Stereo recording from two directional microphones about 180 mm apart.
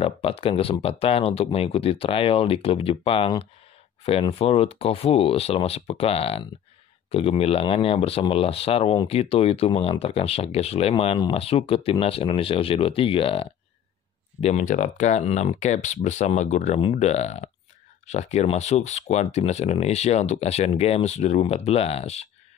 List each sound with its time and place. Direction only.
0.0 s speech: 30° left (ahead or behind)
14.4 s speech: 40° left (ahead or behind)